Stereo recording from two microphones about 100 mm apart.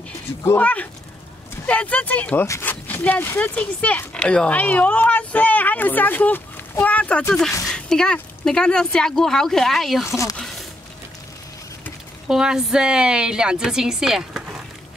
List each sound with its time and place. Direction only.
0.6 s speech: 15° left (ahead or behind)
10.0 s speech: 30° left (ahead or behind)
12.3 s speech: 5° right (ahead or behind)